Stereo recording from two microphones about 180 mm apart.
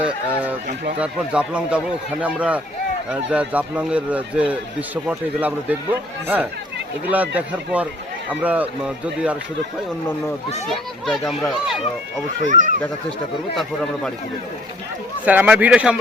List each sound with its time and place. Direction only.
0.0 s a child's voice: 10° right (ahead or behind)
10.7 s a child's voice: centre (ahead or behind)
12.4 s speech: 45° right (ahead or behind)
15.2 s speech: 10° right (ahead or behind)